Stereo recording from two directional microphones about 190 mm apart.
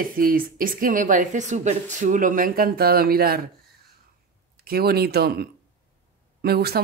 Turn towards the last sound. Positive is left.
turn(degrees=-55)  # may be behind; listen again after turning